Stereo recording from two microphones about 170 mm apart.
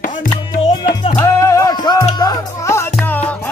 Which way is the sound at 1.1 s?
15° left (ahead or behind).